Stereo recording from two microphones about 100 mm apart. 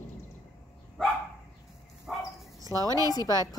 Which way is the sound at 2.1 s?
Centre (ahead or behind).